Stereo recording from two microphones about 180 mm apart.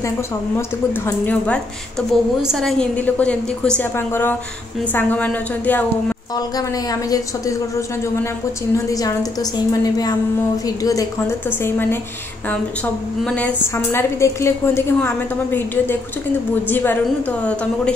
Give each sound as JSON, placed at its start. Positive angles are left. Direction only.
{"t": 0.6, "sound": "a woman's voice", "side_deg": 10}
{"t": 6.3, "sound": "a woman's voice", "side_deg": 20}
{"t": 8.7, "sound": "a woman's voice", "side_deg": 20}
{"t": 13.2, "sound": "a woman's voice", "side_deg": 5}